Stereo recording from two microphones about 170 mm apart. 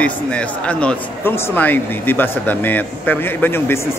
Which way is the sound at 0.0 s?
5° left (ahead or behind).